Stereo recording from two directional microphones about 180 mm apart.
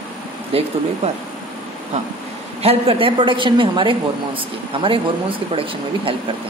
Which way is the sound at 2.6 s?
35° right (ahead or behind).